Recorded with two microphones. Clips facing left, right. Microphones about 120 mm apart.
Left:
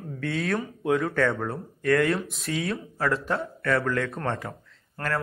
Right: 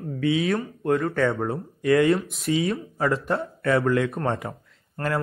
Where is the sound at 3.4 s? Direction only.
20° right (ahead or behind).